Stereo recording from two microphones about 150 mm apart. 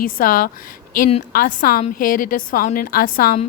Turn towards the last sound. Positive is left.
turn(degrees=70)  # may be behind; listen again after turning